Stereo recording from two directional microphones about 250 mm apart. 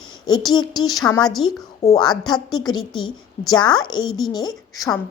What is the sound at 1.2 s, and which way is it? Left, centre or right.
Speech, centre.